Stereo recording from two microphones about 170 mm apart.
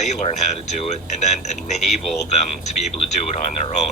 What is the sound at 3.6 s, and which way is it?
Speech, 40° left (ahead or behind).